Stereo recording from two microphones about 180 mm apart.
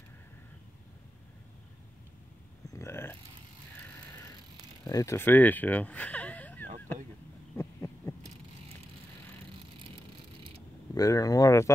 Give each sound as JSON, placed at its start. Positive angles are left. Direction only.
{"t": 2.7, "sound": "burping", "side_deg": 15}
{"t": 4.8, "sound": "speech", "side_deg": 20}
{"t": 7.5, "sound": "heart sounds", "side_deg": 15}
{"t": 11.0, "sound": "speech", "side_deg": 20}